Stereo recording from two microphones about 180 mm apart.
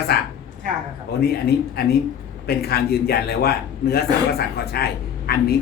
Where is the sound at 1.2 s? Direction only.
60° left (ahead or behind).